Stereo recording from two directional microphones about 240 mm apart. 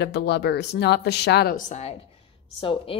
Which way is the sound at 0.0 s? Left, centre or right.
Left.